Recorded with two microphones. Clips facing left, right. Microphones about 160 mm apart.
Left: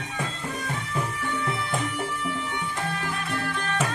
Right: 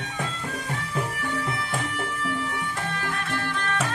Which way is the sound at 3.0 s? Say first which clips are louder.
Even; centre (ahead or behind).